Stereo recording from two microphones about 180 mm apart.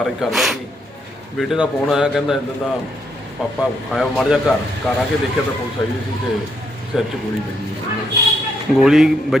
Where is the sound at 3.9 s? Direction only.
Centre (ahead or behind).